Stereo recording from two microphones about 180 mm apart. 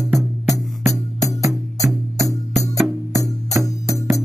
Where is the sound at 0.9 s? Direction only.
20° left (ahead or behind).